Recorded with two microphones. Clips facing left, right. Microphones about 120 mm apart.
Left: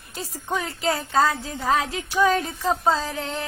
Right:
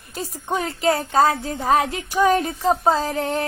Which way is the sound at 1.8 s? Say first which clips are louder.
Right 2 dB; 50° right (ahead or behind).